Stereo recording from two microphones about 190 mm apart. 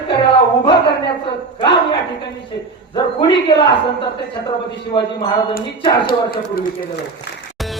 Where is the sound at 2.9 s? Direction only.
25° left (ahead or behind).